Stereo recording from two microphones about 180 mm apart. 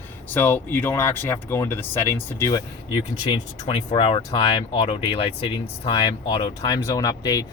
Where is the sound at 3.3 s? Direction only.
30° left (ahead or behind).